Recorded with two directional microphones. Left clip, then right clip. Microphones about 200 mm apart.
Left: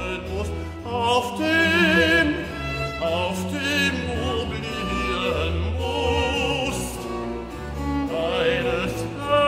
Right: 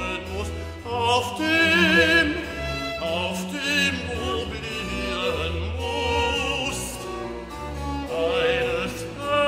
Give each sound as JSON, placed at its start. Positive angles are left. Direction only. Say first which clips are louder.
{"t": 0.9, "sound": "music", "louder": "left 1 dB", "side_deg": 10}
{"t": 5.9, "sound": "music", "louder": "even", "side_deg": -25}
{"t": 6.3, "sound": "music", "louder": "left 2 dB", "side_deg": 10}
{"t": 8.3, "sound": "music", "louder": "even", "side_deg": 10}